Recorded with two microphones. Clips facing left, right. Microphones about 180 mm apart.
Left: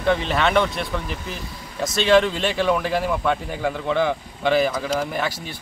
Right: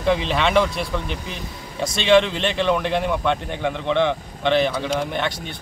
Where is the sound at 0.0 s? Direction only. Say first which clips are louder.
Even; centre (ahead or behind).